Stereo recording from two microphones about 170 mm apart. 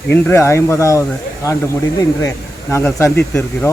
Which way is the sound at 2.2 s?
15° left (ahead or behind).